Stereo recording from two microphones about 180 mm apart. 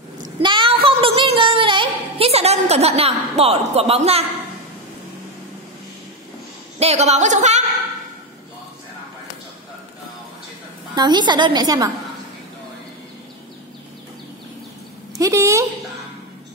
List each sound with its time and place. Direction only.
0.2 s a sound: 25° right (ahead or behind)
6.8 s a woman's voice: 35° right (ahead or behind)
11.0 s a woman's voice: 25° right (ahead or behind)
15.1 s a woman's voice: 15° right (ahead or behind)